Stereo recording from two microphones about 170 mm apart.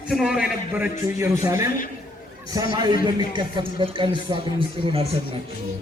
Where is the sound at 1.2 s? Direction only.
15° right (ahead or behind).